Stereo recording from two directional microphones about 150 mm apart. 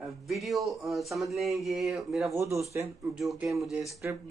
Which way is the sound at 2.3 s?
20° right (ahead or behind).